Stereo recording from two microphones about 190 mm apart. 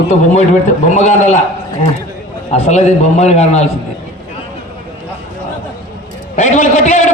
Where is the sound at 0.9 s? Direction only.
35° left (ahead or behind).